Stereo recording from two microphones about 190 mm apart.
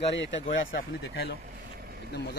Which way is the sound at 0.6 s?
55° left (ahead or behind).